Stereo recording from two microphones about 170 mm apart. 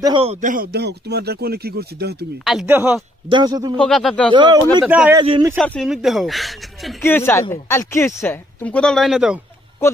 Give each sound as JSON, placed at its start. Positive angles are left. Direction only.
{"t": 0.0, "sound": "speech", "side_deg": -30}
{"t": 0.7, "sound": "speech", "side_deg": -75}
{"t": 2.6, "sound": "speech", "side_deg": -10}
{"t": 3.3, "sound": "speech", "side_deg": -25}
{"t": 3.7, "sound": "speech", "side_deg": 5}
{"t": 4.3, "sound": "speech", "side_deg": -25}
{"t": 4.8, "sound": "speech", "side_deg": -5}
{"t": 7.0, "sound": "speech", "side_deg": 15}